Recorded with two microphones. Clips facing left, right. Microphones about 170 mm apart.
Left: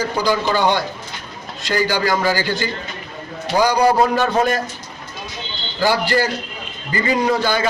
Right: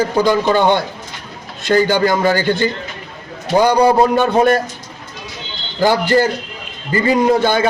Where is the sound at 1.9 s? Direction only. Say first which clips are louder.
Right 4 dB; 25° right (ahead or behind).